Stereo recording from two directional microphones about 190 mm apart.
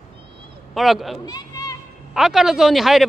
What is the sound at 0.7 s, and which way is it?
Speech, centre (ahead or behind).